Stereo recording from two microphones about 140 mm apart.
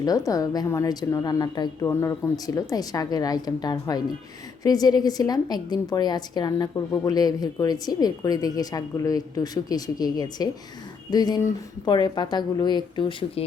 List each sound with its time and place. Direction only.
0.3 s a woman's voice: 25° left (ahead or behind)